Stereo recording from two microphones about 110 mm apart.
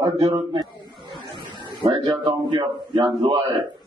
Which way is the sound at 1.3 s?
45° right (ahead or behind).